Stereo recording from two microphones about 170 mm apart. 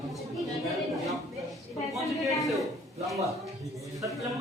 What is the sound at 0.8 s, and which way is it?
Speech, 20° right (ahead or behind).